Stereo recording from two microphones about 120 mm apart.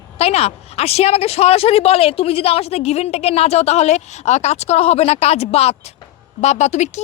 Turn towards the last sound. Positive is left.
turn(degrees=75)  # may be behind; listen again after turning